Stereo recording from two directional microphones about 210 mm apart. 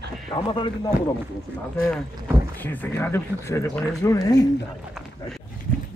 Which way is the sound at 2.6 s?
10° left (ahead or behind).